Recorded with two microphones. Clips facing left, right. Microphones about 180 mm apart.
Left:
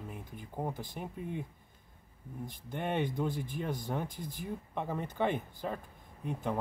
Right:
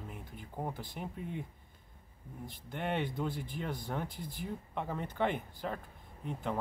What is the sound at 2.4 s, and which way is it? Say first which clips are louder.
Speech: left 1 dB; 15° left (ahead or behind).